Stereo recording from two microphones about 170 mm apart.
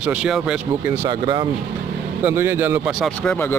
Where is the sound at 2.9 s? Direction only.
Centre (ahead or behind).